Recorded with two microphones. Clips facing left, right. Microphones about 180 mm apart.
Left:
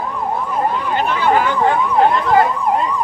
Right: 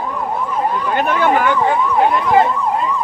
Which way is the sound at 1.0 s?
50° right (ahead or behind).